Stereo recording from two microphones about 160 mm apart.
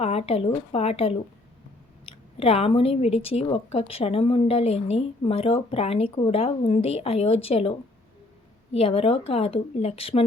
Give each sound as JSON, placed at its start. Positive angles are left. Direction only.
{"t": 0.0, "sound": "speech", "side_deg": 40}